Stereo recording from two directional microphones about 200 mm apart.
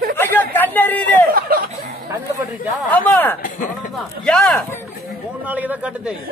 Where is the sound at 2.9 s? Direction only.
10° left (ahead or behind).